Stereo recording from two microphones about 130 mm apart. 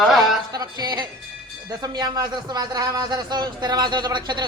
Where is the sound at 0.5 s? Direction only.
30° right (ahead or behind).